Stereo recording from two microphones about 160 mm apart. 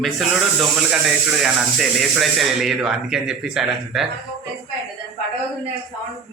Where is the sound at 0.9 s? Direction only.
5° right (ahead or behind).